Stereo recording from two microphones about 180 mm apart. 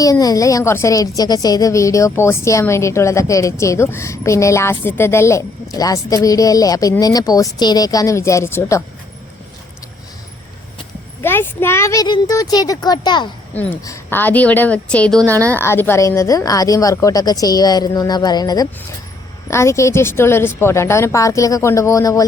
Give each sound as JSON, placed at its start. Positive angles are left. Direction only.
{"t": 0.0, "sound": "a woman's voice", "side_deg": 20}
{"t": 11.2, "sound": "speech", "side_deg": 10}
{"t": 13.5, "sound": "a woman's voice", "side_deg": 10}